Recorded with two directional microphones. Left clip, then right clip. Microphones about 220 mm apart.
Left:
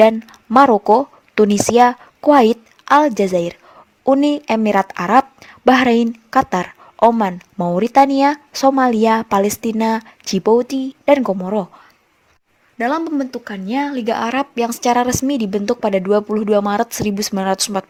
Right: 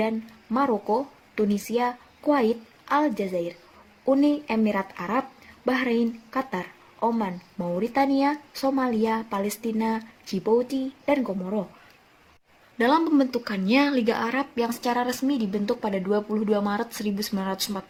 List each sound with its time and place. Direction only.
0.5 s speech: 40° left (ahead or behind)
12.7 s speech: 20° left (ahead or behind); by 17.8 s 40° left (ahead or behind)